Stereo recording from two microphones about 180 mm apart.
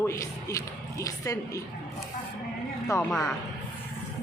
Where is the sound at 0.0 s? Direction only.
15° left (ahead or behind).